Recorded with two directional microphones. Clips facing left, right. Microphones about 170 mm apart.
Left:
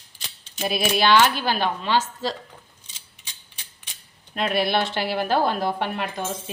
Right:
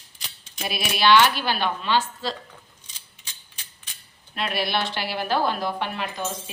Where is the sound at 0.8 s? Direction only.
45° left (ahead or behind).